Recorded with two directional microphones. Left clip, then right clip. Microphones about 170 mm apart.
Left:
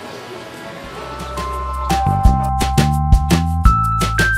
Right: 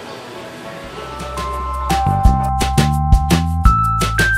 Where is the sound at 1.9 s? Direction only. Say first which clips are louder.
Even; centre (ahead or behind).